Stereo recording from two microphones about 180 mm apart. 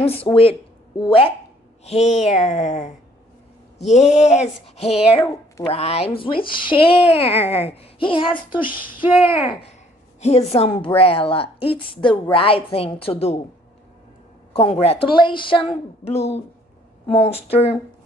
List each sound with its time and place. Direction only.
0.3 s a woman's voice: 30° left (ahead or behind)
10.2 s a woman's voice: 35° left (ahead or behind)
14.5 s a woman's voice: 35° left (ahead or behind)